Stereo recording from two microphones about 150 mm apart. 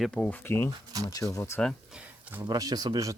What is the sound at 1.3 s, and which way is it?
Speech, 20° left (ahead or behind).